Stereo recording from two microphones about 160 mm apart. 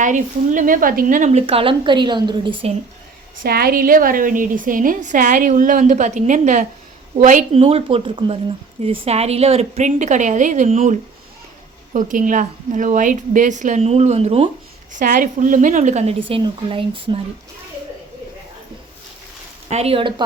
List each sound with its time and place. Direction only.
0.0 s a woman's voice: 55° right (ahead or behind); by 2.7 s 35° right (ahead or behind)
3.4 s a woman's voice: 70° right (ahead or behind); by 7.6 s 50° right (ahead or behind)
7.6 s a woman's voice: 35° right (ahead or behind)
11.9 s a woman's voice: 55° right (ahead or behind); by 14.5 s 40° right (ahead or behind)
14.9 s a woman's voice: 60° right (ahead or behind); by 17.2 s 35° right (ahead or behind)
19.7 s a woman's voice: 40° right (ahead or behind)